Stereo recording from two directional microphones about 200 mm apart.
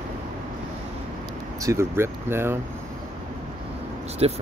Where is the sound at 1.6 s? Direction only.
15° right (ahead or behind).